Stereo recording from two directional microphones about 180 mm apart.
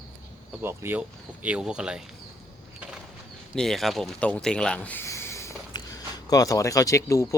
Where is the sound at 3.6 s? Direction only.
Centre (ahead or behind).